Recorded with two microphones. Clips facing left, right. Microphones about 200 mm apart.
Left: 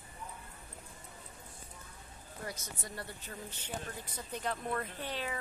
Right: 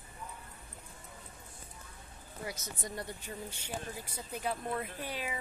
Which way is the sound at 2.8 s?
15° right (ahead or behind).